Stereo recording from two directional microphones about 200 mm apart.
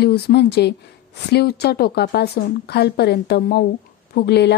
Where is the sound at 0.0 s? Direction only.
55° left (ahead or behind).